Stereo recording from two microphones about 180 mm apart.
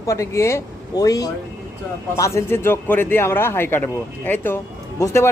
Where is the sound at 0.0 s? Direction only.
15° left (ahead or behind).